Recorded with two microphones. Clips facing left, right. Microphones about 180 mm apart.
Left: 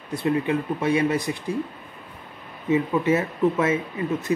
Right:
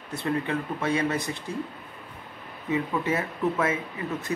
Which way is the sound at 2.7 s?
20° left (ahead or behind).